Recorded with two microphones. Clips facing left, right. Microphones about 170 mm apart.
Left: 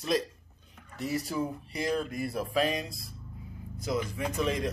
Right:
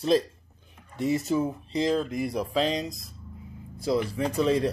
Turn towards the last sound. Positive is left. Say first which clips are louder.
# right 6 dB
turn(degrees=-30)  # may be behind; listen again after turning